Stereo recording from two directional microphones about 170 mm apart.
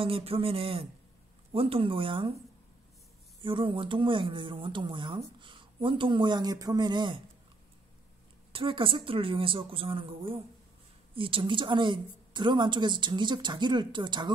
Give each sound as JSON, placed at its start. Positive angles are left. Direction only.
{"t": 0.0, "sound": "speech", "side_deg": -35}
{"t": 3.4, "sound": "speech", "side_deg": -30}
{"t": 8.5, "sound": "speech", "side_deg": -30}